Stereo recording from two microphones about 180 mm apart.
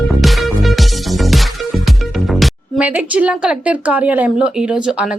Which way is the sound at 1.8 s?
Centre (ahead or behind).